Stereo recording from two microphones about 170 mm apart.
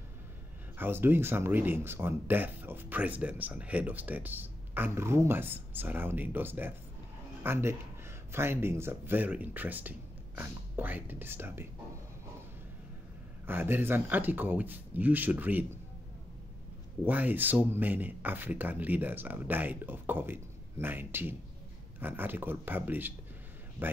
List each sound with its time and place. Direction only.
0.7 s speech: 15° right (ahead or behind)
13.5 s speech: 10° right (ahead or behind)
17.0 s speech: 10° right (ahead or behind)